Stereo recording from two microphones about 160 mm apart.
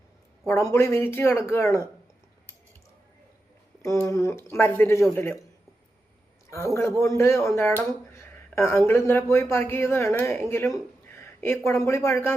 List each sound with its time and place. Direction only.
0.4 s speech: 20° left (ahead or behind)
3.8 s speech: 20° left (ahead or behind)
7.0 s speech: 15° left (ahead or behind)
7.9 s a sound: 15° left (ahead or behind)
8.9 s speech: 15° left (ahead or behind)